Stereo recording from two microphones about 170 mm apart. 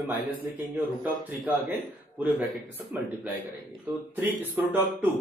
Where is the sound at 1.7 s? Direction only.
10° right (ahead or behind).